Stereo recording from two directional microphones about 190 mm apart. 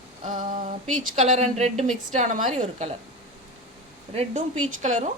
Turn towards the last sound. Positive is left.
turn(degrees=-40)  # may be behind; listen again after turning